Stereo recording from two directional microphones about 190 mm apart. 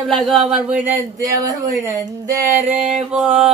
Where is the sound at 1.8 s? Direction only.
20° right (ahead or behind).